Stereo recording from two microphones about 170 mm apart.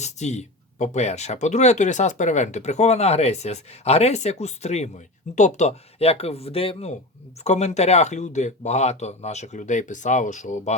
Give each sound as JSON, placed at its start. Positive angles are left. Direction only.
{"t": 0.0, "sound": "speech", "side_deg": 40}